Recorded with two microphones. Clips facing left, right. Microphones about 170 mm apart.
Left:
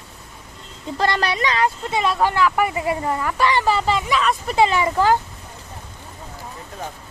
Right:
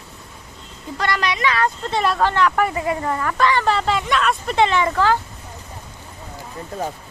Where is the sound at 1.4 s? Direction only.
20° left (ahead or behind).